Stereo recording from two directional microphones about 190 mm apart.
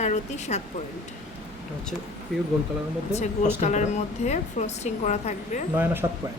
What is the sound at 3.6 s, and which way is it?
A woman's voice, 40° left (ahead or behind).